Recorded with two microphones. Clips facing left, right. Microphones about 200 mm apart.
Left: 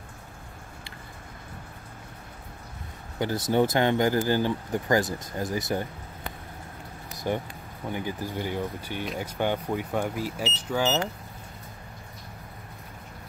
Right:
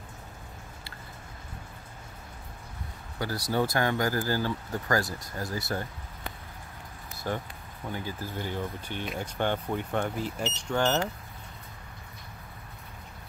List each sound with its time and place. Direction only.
3.2 s speech: 20° left (ahead or behind)
7.1 s vehicle: 15° left (ahead or behind)
7.9 s speech: 15° left (ahead or behind)
9.0 s speech: centre (ahead or behind)
9.4 s speech: 10° left (ahead or behind)